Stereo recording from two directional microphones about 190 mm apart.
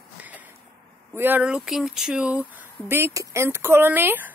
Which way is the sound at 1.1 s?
10° right (ahead or behind).